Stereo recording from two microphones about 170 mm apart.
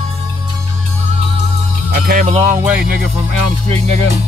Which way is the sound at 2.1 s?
50° right (ahead or behind).